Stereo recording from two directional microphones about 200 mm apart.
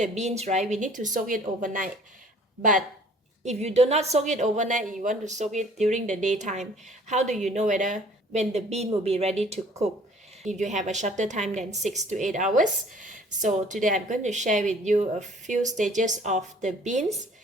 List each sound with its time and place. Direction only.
0.2 s a woman's voice: 35° right (ahead or behind)